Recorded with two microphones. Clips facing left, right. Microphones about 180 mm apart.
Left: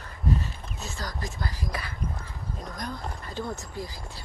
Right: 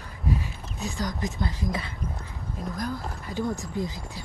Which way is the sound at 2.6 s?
5° right (ahead or behind).